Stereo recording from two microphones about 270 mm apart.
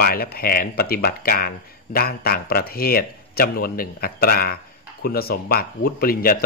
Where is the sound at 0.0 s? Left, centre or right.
Left.